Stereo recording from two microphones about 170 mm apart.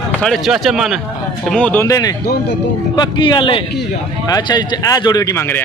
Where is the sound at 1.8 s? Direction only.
20° left (ahead or behind).